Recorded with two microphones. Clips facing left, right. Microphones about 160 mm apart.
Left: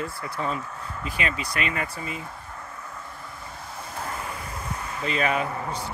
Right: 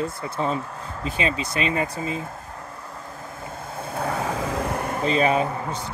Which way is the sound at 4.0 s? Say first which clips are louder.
Right 9 dB; 80° right.